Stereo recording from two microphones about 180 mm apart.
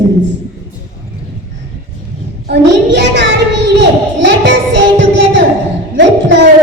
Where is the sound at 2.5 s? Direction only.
75° right (ahead or behind).